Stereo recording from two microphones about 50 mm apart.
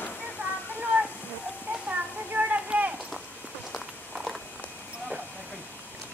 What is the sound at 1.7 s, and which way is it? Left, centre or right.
Clip-clop, right.